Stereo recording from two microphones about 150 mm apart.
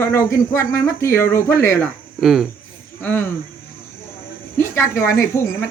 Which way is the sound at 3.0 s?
10° left (ahead or behind).